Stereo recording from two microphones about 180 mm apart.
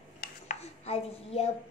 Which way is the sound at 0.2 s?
40° left (ahead or behind).